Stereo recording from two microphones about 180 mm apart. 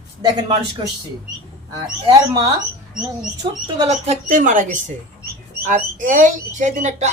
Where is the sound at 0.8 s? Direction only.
30° right (ahead or behind).